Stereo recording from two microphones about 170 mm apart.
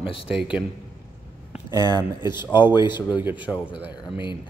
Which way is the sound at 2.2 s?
25° left (ahead or behind).